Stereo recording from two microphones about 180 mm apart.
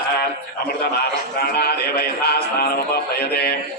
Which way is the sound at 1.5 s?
60° left (ahead or behind).